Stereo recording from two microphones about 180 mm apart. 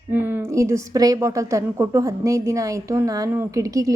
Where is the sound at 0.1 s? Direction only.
10° right (ahead or behind).